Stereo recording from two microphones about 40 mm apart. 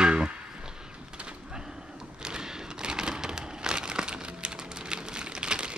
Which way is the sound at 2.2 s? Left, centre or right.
Centre.